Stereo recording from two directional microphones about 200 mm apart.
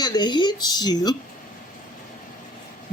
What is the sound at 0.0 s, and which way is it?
Speech, 20° left (ahead or behind).